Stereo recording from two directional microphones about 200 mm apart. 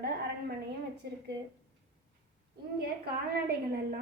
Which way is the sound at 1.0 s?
50° right (ahead or behind).